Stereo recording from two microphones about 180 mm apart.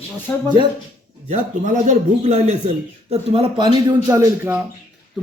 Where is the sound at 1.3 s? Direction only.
45° right (ahead or behind); by 4.5 s 20° right (ahead or behind).